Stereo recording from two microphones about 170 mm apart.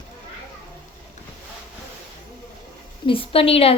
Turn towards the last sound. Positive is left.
turn(degrees=35)  # may be behind; listen again after turning